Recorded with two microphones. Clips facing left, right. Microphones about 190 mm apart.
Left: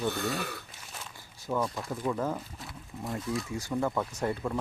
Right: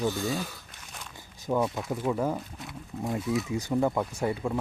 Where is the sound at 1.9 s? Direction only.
15° right (ahead or behind).